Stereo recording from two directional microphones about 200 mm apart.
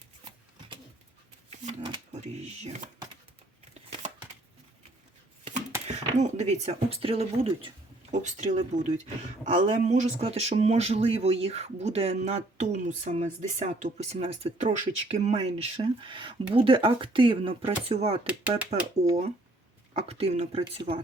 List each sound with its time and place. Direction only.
1.6 s speech: 25° right (ahead or behind)
5.9 s speech: 35° right (ahead or behind)
18.3 s speech: 5° right (ahead or behind)
19.9 s speech: 30° right (ahead or behind)